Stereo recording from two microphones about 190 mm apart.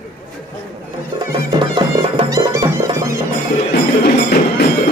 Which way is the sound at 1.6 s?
25° right (ahead or behind).